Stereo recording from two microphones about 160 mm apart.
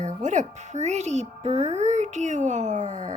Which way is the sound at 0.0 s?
50° right (ahead or behind).